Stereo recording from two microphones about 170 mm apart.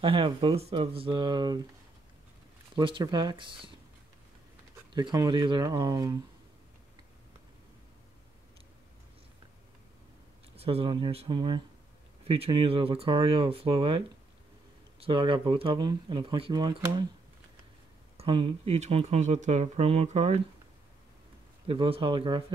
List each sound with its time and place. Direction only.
0.0 s speech: 30° right (ahead or behind)
2.7 s speech: 30° right (ahead or behind)
4.9 s speech: 20° right (ahead or behind)
10.5 s speech: 35° right (ahead or behind)
18.1 s speech: 30° right (ahead or behind)
21.6 s speech: 30° right (ahead or behind)